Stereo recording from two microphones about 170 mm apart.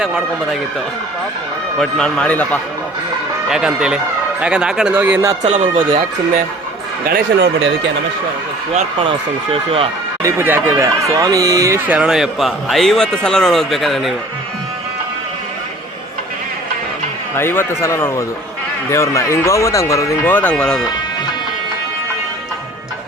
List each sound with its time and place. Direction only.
1.8 s speech: 5° left (ahead or behind)
3.5 s speech: 5° right (ahead or behind)
5.5 s speech: 35° right (ahead or behind)
7.1 s speech: 85° right
8.7 s speech: 30° right (ahead or behind)
10.2 s speech: 15° right (ahead or behind)
17.3 s speech: 15° left (ahead or behind)